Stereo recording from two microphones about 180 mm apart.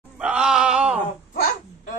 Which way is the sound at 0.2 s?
5° right (ahead or behind).